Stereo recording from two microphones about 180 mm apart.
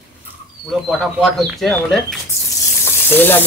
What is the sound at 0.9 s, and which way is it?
Speech, centre (ahead or behind).